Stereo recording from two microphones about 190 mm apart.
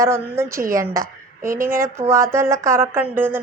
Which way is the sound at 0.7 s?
15° right (ahead or behind).